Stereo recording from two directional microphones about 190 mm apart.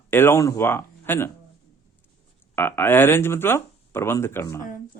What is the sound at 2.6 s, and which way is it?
Speech, 10° left (ahead or behind).